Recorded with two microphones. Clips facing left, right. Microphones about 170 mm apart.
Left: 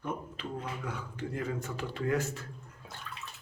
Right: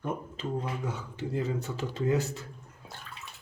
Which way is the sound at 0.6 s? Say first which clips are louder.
Right 3 dB; 25° right (ahead or behind).